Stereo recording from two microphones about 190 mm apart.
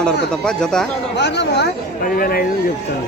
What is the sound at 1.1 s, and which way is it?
Speech, 65° left (ahead or behind).